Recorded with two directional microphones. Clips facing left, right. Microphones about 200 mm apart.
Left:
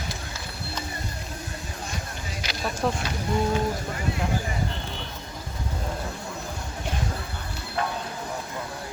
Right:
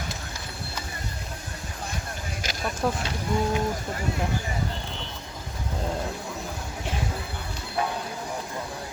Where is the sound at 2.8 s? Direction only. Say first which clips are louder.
Even; 5° right (ahead or behind).